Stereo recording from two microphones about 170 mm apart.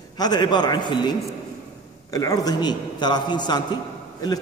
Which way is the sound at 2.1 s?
20° left (ahead or behind).